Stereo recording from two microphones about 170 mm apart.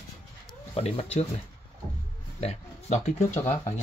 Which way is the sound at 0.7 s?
35° left (ahead or behind).